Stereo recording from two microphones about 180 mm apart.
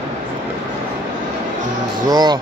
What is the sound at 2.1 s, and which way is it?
Speech, 25° right (ahead or behind).